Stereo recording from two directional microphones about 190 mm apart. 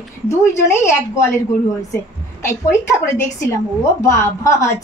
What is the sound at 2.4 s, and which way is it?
A woman's voice, 15° left (ahead or behind).